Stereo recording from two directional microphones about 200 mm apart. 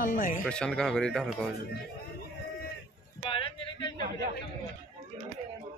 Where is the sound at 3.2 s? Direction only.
25° left (ahead or behind).